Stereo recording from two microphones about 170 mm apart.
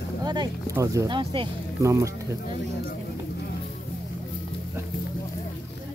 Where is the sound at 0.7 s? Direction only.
20° right (ahead or behind).